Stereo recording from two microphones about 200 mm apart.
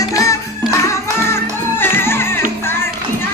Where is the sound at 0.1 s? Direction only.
15° left (ahead or behind).